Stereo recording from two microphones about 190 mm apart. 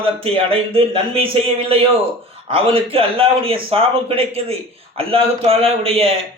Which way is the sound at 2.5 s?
30° right (ahead or behind).